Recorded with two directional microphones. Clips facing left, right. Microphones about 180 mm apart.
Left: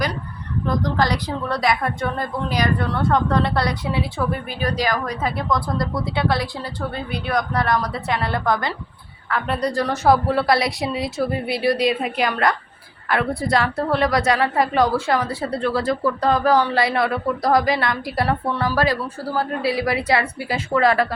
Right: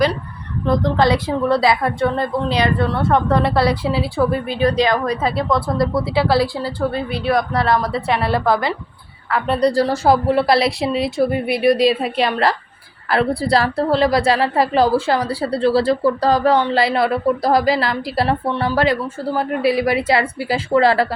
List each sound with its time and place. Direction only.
0.7 s a woman's voice: 25° right (ahead or behind)